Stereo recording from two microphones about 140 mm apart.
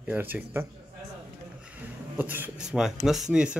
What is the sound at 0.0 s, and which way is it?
Speech, 10° right (ahead or behind).